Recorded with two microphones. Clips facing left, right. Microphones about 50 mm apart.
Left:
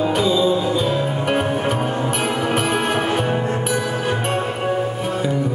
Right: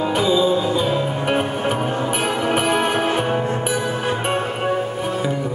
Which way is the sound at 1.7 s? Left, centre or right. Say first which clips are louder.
Even; centre.